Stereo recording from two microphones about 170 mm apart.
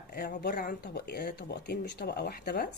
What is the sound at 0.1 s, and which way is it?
Speech, 60° left (ahead or behind).